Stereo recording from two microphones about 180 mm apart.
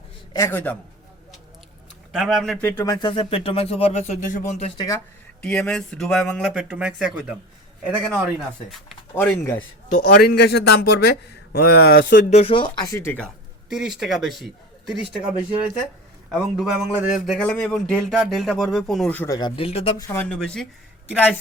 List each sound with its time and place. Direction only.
0.3 s speech: 15° left (ahead or behind)
2.1 s speech: centre (ahead or behind)
2.6 s speech: 10° left (ahead or behind); by 4.7 s 40° left (ahead or behind)
4.8 s speech: 20° left (ahead or behind)
5.4 s speech: 5° left (ahead or behind)
9.1 s speech: 10° left (ahead or behind)
10.1 s a man's voice: 60° left (ahead or behind); by 12.1 s 75° left (ahead or behind)
12.1 s speech: 35° left (ahead or behind); by 13.2 s 15° left (ahead or behind)
13.7 s a man's voice: 5° right (ahead or behind)
19.4 s speech: 30° left (ahead or behind)
20.0 s speech: 10° left (ahead or behind)